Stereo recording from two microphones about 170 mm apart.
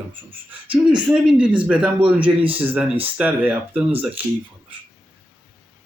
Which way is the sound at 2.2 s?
30° right (ahead or behind).